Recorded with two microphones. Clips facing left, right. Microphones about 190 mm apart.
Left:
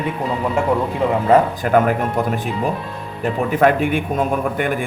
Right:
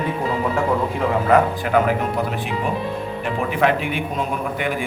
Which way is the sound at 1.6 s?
45° left (ahead or behind).